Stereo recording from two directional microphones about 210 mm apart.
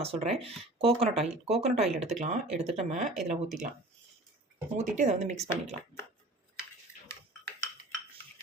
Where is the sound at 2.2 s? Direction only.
35° right (ahead or behind).